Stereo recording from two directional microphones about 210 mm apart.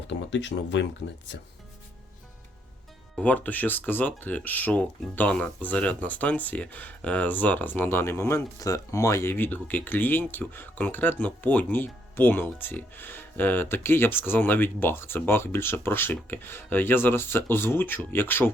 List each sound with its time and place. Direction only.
0.1 s speech: 60° left (ahead or behind)
3.2 s speech: 5° left (ahead or behind)